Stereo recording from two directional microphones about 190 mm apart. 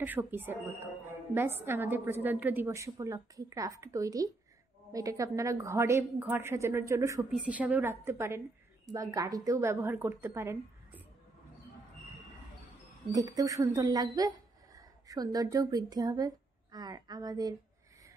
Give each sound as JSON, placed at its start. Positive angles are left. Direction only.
{"t": 0.0, "sound": "a woman's voice", "side_deg": -10}
{"t": 7.2, "sound": "a woman's voice", "side_deg": -5}
{"t": 13.1, "sound": "a woman's voice", "side_deg": -20}